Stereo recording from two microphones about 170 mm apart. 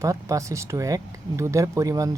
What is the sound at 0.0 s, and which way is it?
Speech, 20° right (ahead or behind).